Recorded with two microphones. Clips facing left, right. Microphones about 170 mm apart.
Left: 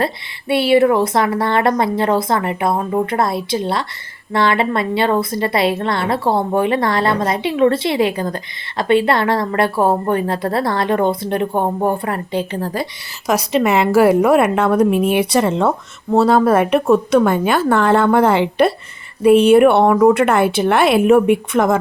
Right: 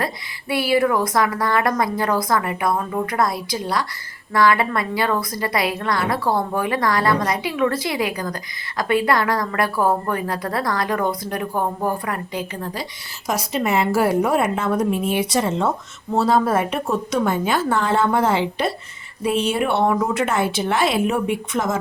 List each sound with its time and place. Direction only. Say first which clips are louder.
0.0 s a woman's voice: left 5 dB; 25° left (ahead or behind)
12.7 s a woman's voice: left 7 dB; 65° left (ahead or behind)